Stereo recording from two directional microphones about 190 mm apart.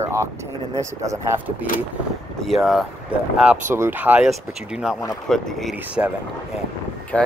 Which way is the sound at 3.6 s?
15° right (ahead or behind).